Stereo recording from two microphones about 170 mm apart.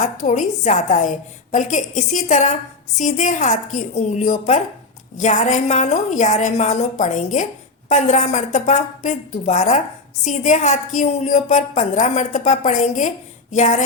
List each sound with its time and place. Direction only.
0.0 s a woman's voice: 45° left (ahead or behind)